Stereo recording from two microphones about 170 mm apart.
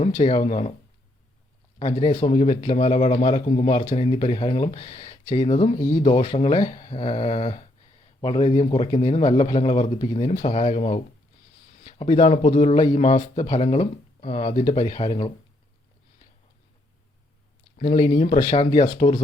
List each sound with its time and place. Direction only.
0.2 s a man's voice: 35° left (ahead or behind)
1.8 s a man's voice: 40° left (ahead or behind)
3.4 s a man's voice: 45° left (ahead or behind)
17.7 s a man's voice: 50° left (ahead or behind)